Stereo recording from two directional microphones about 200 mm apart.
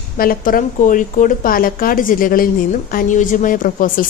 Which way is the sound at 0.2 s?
45° left (ahead or behind).